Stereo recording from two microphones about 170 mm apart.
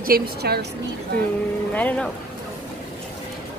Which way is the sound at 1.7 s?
10° left (ahead or behind).